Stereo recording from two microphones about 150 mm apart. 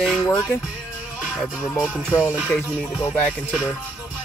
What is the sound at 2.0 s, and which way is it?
Music, 15° left (ahead or behind).